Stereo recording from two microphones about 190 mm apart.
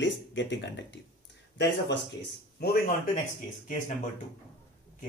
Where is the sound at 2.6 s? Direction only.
50° left (ahead or behind).